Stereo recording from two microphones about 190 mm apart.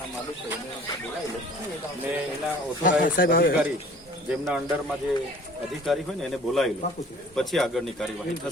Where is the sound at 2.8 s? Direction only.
45° left (ahead or behind).